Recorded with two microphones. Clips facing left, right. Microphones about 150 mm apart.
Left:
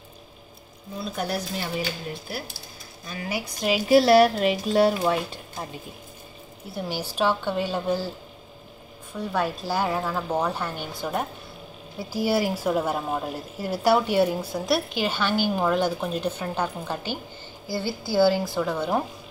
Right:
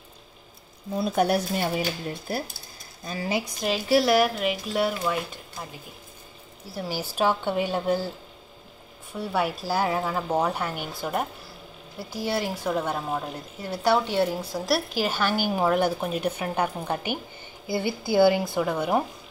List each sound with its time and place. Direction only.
1.1 s speech: 55° right (ahead or behind)
2.2 s speech: 45° right (ahead or behind)
3.1 s speech: 30° right (ahead or behind)
3.9 s speech: 30° left (ahead or behind)
6.7 s a woman's voice: 5° right (ahead or behind)
9.1 s a woman's voice: 10° right (ahead or behind)